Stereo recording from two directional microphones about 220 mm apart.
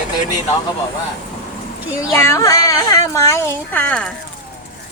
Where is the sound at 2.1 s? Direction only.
15° left (ahead or behind).